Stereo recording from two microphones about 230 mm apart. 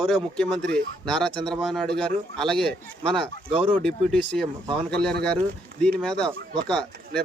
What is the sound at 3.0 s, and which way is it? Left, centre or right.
Speech, right.